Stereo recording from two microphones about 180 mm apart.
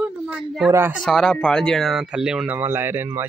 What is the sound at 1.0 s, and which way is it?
Speech, 5° left (ahead or behind).